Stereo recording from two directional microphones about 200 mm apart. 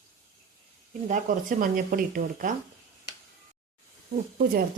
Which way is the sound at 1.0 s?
40° right (ahead or behind).